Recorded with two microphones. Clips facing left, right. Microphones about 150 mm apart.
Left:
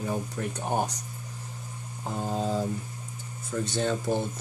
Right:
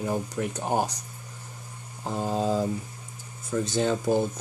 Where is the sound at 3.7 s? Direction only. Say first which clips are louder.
Right 3 dB; 15° right (ahead or behind).